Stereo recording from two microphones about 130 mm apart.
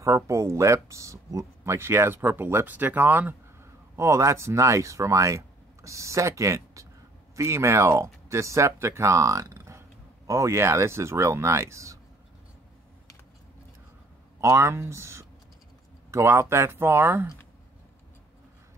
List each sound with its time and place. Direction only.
0.0 s speech: 25° right (ahead or behind)
14.4 s speech: 20° right (ahead or behind)